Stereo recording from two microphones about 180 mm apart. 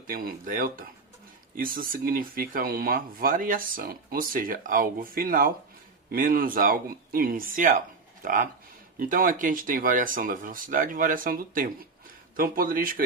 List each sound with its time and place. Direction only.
0.1 s speech: 50° right (ahead or behind)